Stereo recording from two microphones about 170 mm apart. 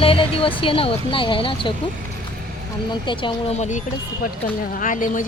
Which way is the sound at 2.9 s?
30° left (ahead or behind).